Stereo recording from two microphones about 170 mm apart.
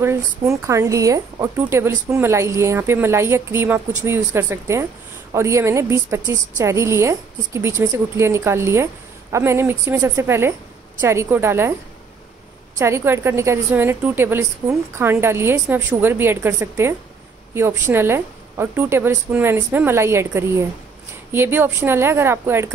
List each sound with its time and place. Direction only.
0.0 s a woman's voice: 15° right (ahead or behind)
12.7 s a woman's voice: 15° right (ahead or behind)